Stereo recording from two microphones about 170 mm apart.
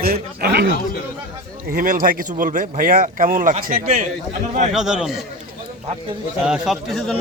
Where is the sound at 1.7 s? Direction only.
55° right (ahead or behind).